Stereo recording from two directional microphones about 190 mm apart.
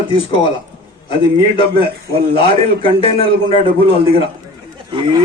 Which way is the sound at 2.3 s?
30° left (ahead or behind).